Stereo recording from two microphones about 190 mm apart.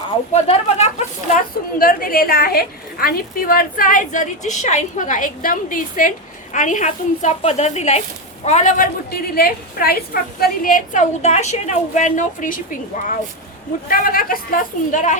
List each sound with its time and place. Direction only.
0.4 s speech: 35° left (ahead or behind)
1.8 s a woman's voice: 50° left (ahead or behind)